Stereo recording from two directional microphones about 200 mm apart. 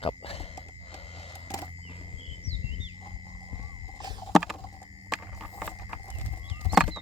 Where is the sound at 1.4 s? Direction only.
15° left (ahead or behind).